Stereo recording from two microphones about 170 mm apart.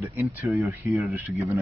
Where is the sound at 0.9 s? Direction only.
Centre (ahead or behind).